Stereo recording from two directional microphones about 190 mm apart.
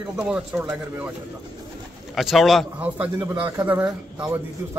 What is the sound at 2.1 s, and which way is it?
Speech, centre (ahead or behind).